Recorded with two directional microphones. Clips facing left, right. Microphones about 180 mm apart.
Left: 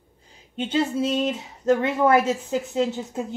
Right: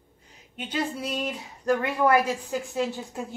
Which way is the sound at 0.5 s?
25° left (ahead or behind).